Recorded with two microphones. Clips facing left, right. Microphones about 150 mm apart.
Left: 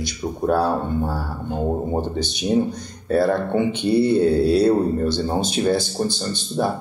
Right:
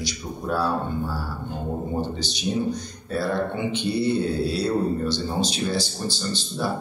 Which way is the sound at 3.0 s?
50° left (ahead or behind).